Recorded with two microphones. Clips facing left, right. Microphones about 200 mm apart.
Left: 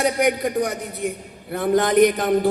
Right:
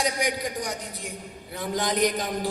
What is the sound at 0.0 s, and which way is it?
A man's voice, 55° left (ahead or behind).